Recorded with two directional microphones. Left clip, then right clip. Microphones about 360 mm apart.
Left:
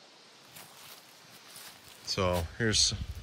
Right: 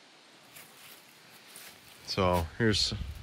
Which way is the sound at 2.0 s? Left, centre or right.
Centre.